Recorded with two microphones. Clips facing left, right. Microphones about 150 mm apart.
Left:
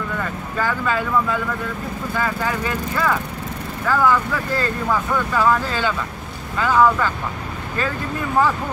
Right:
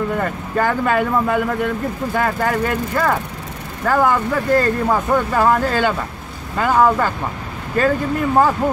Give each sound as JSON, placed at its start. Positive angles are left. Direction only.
{"t": 0.2, "sound": "speech", "side_deg": -50}